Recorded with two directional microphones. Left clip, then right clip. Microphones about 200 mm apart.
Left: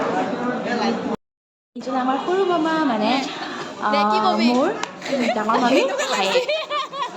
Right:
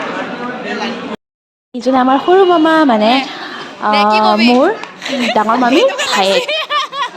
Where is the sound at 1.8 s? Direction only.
40° right (ahead or behind).